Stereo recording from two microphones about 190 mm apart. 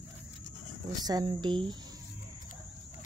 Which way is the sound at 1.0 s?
20° right (ahead or behind).